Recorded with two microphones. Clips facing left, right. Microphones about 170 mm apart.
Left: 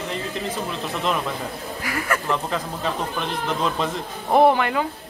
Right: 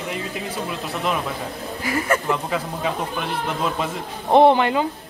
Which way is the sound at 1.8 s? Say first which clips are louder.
Right 4 dB; 25° right (ahead or behind).